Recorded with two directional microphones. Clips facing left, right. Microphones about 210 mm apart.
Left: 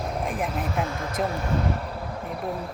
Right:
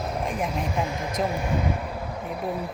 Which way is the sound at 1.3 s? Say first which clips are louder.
Even; 15° right (ahead or behind).